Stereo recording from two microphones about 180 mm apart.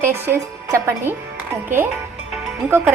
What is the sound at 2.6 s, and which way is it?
Speech, 10° right (ahead or behind).